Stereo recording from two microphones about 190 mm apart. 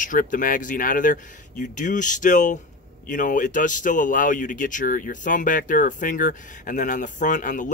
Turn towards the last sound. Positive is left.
turn(degrees=40)  # may be behind; listen again after turning